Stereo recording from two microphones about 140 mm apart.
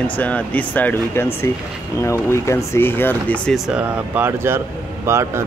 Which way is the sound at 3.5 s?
5° right (ahead or behind).